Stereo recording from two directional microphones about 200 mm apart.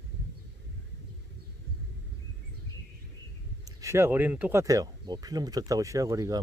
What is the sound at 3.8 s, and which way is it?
Speech, 15° right (ahead or behind).